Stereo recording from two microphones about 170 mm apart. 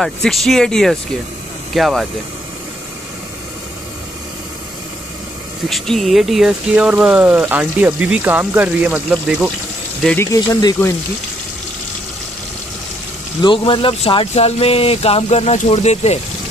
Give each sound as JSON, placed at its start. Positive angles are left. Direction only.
{"t": 0.0, "sound": "speech", "side_deg": 0}
{"t": 5.7, "sound": "speech", "side_deg": 0}
{"t": 10.1, "sound": "speech", "side_deg": 20}
{"t": 13.4, "sound": "speech", "side_deg": 30}